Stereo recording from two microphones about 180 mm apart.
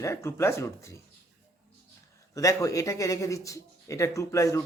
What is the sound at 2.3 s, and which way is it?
Speech, 15° left (ahead or behind).